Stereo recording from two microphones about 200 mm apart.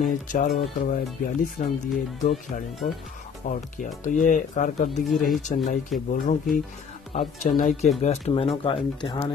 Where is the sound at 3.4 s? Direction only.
40° left (ahead or behind).